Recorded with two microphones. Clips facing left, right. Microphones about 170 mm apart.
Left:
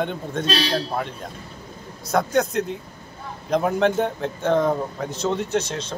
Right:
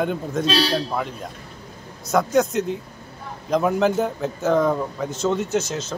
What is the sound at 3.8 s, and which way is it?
Speech, 5° right (ahead or behind).